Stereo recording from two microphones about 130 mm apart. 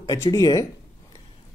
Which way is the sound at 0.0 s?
25° left (ahead or behind).